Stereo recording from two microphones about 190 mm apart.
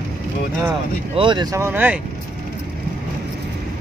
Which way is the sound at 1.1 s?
25° right (ahead or behind).